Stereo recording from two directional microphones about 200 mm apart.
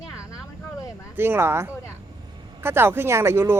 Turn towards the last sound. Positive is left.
turn(degrees=-10)  # may be behind; listen again after turning